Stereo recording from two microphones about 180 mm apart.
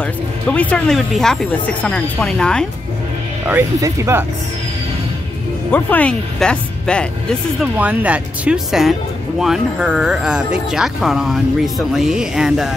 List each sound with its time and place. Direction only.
0.0 s speech: 10° left (ahead or behind)
3.4 s speech: 15° right (ahead or behind)
5.7 s speech: 10° left (ahead or behind)
7.7 s speech: 5° right (ahead or behind)